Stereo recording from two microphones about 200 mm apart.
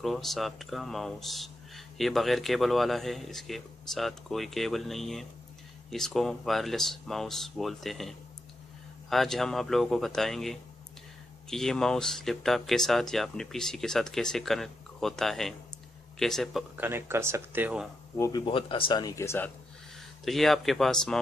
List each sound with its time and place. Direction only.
0.0 s speech: centre (ahead or behind)
18.1 s speech: 15° left (ahead or behind)
20.2 s speech: centre (ahead or behind)